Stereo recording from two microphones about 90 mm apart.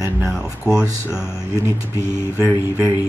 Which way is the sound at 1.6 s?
35° right (ahead or behind).